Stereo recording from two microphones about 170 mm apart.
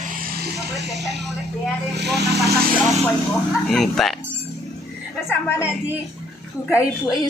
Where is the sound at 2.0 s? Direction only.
80° right.